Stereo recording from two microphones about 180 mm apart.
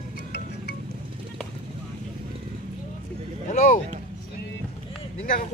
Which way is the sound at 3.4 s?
50° left (ahead or behind).